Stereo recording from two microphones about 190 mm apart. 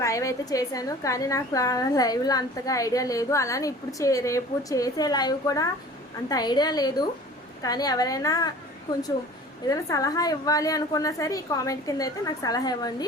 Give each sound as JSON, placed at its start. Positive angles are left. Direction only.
{"t": 0.0, "sound": "a woman's voice", "side_deg": 15}
{"t": 9.6, "sound": "a woman's voice", "side_deg": 20}